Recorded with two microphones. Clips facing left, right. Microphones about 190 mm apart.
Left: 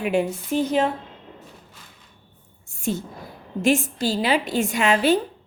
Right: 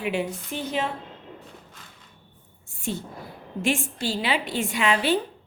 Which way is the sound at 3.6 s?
40° left (ahead or behind).